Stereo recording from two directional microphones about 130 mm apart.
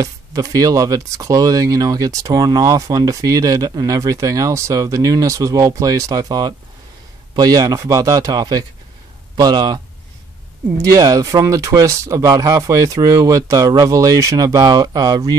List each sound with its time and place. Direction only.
0.0 s speech: 25° right (ahead or behind)
10.8 s speech: 25° right (ahead or behind)